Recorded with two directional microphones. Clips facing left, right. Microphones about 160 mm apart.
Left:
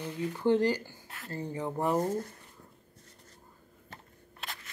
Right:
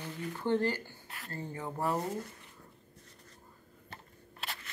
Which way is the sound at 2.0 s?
45° left (ahead or behind).